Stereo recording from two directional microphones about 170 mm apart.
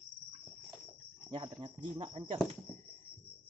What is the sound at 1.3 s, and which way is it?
Speech, 30° right (ahead or behind).